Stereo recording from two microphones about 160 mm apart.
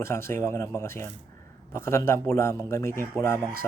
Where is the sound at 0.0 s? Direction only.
15° left (ahead or behind).